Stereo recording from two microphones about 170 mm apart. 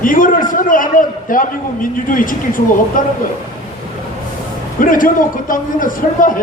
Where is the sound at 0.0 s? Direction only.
55° left (ahead or behind).